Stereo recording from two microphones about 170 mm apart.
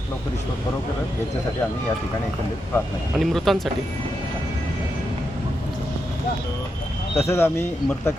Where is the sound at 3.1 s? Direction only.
Centre (ahead or behind).